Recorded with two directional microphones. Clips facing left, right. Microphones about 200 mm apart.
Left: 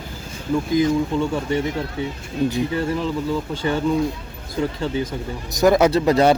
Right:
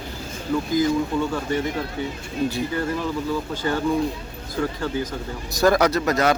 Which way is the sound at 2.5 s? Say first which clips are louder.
Left 3 dB; 25° left (ahead or behind).